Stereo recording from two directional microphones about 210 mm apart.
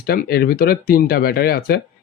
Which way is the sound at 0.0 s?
45° left (ahead or behind).